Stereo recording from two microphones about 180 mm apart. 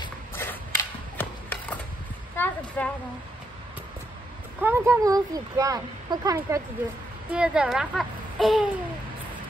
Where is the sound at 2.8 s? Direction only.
10° left (ahead or behind).